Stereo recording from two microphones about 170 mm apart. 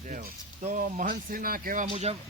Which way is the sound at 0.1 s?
60° right (ahead or behind).